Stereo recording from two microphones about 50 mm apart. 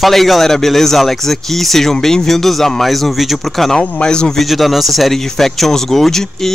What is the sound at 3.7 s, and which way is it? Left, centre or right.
Speech, centre.